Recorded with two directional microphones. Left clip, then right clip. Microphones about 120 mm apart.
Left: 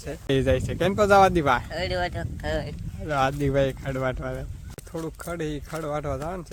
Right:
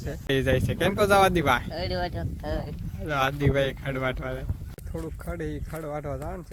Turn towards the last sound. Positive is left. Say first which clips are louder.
# left 4 dB
turn(degrees=15)  # may be behind; listen again after turning